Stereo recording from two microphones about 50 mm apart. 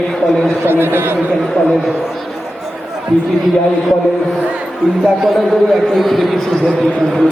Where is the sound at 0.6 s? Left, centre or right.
Right.